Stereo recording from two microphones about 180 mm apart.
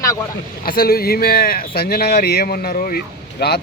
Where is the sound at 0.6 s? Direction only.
55° left (ahead or behind).